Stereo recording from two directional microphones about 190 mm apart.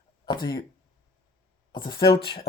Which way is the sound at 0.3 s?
20° left (ahead or behind).